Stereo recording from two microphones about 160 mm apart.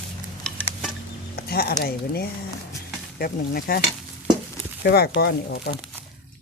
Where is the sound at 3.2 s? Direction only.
70° left (ahead or behind).